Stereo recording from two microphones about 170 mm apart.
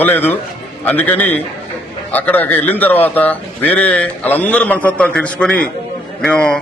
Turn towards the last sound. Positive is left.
turn(degrees=5)  # may be behind; listen again after turning